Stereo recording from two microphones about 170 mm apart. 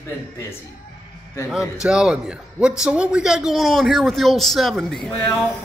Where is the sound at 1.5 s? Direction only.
5° right (ahead or behind).